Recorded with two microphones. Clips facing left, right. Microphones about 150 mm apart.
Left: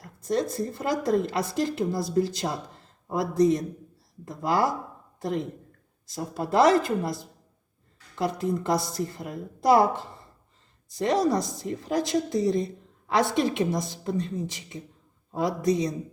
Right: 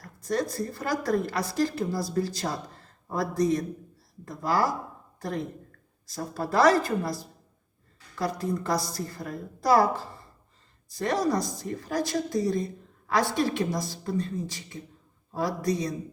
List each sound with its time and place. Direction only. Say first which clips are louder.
0.0 s a woman's voice: left 2 dB; 25° left (ahead or behind)